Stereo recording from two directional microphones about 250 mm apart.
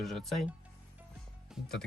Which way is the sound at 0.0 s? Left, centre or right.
Centre.